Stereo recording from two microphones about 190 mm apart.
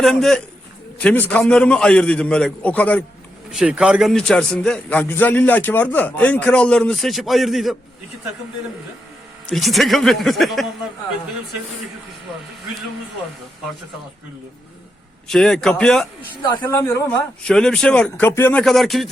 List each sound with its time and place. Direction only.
0.0 s a man's voice: centre (ahead or behind)
3.5 s a man's voice: 5° right (ahead or behind)
9.5 s a man's voice: centre (ahead or behind)
15.3 s a man's voice: 5° left (ahead or behind)
17.4 s a man's voice: 5° left (ahead or behind)